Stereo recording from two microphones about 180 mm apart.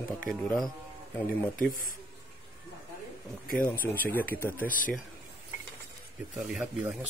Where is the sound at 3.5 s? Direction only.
10° left (ahead or behind).